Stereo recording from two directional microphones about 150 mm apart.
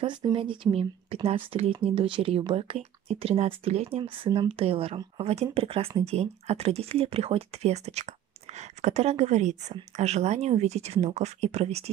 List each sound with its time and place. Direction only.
0.0 s speech: 30° right (ahead or behind)